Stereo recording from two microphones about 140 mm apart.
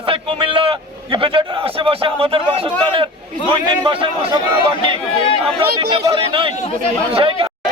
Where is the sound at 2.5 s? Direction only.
40° right (ahead or behind).